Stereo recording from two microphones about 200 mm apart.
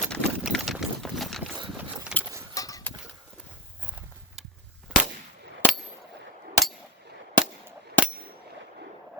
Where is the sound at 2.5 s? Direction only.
15° left (ahead or behind).